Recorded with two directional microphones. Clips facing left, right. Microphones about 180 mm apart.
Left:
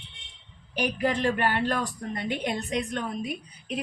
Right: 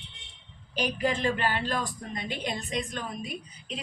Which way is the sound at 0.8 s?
65° left (ahead or behind).